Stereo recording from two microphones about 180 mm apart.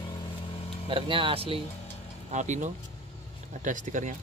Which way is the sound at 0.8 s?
30° right (ahead or behind).